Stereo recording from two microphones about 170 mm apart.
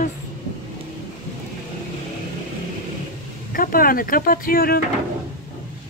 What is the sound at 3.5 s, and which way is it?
Speech, 60° left (ahead or behind).